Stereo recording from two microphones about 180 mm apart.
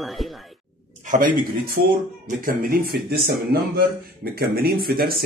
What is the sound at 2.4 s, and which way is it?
Speech, 50° right (ahead or behind).